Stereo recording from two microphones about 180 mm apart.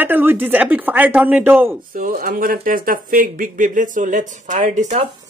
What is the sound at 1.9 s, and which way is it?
Speech, 50° right (ahead or behind).